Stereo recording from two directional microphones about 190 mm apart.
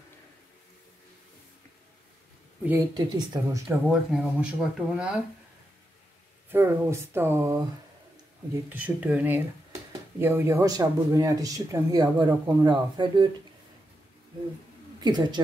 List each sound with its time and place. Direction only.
2.9 s speech: 20° right (ahead or behind)
3.6 s speech: 5° right (ahead or behind)
6.5 s speech: 10° right (ahead or behind)
8.6 s speech: 10° right (ahead or behind); by 13.3 s 25° right (ahead or behind)
15.0 s a woman's voice: 20° right (ahead or behind)